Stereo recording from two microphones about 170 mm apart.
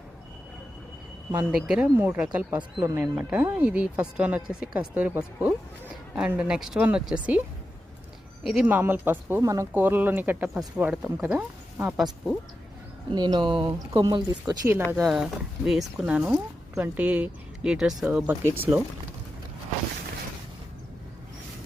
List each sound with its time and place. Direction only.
1.5 s speech: 5° right (ahead or behind)
8.4 s speech: 5° right (ahead or behind)
13.1 s speech: 25° right (ahead or behind)
15.0 s speech: 5° right (ahead or behind)